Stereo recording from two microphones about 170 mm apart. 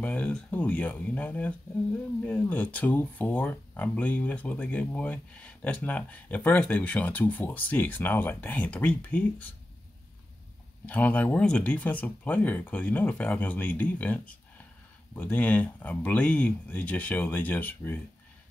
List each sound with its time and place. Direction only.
0.0 s speech: 10° left (ahead or behind)
10.9 s speech: 10° left (ahead or behind)